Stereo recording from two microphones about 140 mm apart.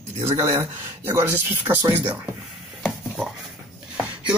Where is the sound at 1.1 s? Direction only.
15° right (ahead or behind).